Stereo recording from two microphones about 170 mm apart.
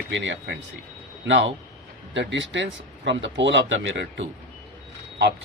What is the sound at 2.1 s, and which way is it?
Speech, 90° right.